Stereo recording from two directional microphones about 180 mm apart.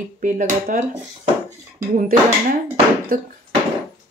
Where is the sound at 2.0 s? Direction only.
50° right (ahead or behind).